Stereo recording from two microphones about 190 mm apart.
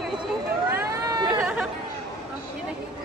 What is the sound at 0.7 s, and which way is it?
Chatter, 15° right (ahead or behind).